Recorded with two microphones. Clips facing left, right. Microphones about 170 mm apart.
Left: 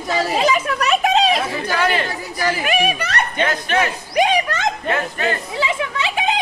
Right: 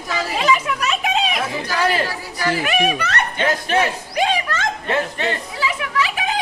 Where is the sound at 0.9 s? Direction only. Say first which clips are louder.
Left 6 dB; 40° left (ahead or behind).